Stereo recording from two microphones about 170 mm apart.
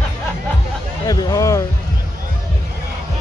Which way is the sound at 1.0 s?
20° left (ahead or behind).